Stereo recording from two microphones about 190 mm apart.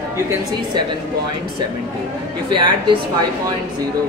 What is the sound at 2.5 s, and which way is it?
Speech, 25° right (ahead or behind).